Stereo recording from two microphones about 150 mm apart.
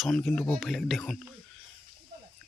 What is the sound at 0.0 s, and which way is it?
Speech, 5° left (ahead or behind).